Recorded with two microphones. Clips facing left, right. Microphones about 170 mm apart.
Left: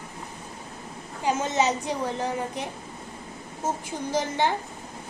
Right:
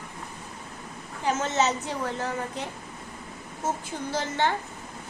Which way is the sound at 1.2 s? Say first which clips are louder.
Left 1 dB; 15° left (ahead or behind).